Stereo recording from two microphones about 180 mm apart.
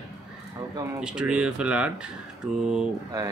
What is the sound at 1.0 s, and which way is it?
Speech, 5° right (ahead or behind).